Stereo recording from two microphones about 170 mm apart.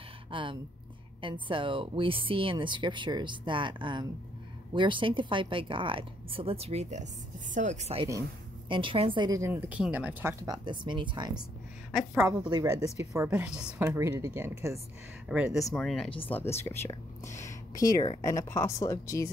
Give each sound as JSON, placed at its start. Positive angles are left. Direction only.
{"t": 0.3, "sound": "speech", "side_deg": -30}
{"t": 8.6, "sound": "speech", "side_deg": -30}
{"t": 10.4, "sound": "speech", "side_deg": -25}
{"t": 11.9, "sound": "a woman's voice", "side_deg": -5}
{"t": 12.3, "sound": "speech", "side_deg": -20}
{"t": 13.3, "sound": "speech", "side_deg": -5}
{"t": 15.2, "sound": "a woman's voice", "side_deg": -5}
{"t": 16.3, "sound": "speech", "side_deg": 15}